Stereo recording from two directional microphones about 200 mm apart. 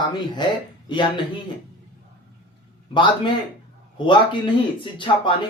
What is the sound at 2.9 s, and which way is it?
Speech, 25° left (ahead or behind).